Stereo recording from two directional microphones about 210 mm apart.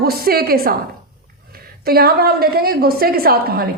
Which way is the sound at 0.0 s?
45° right (ahead or behind).